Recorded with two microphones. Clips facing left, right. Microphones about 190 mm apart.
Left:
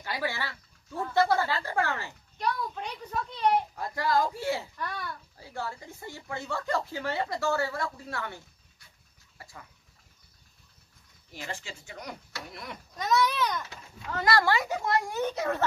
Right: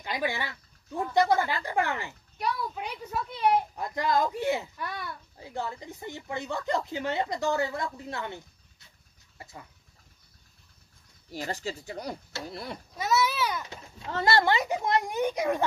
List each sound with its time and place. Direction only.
0.0 s a child's voice: 20° right (ahead or behind)
3.8 s speech: 20° right (ahead or behind)
11.3 s speech: 40° right (ahead or behind)
12.9 s a child's voice: 5° right (ahead or behind)
13.7 s speech: 25° right (ahead or behind)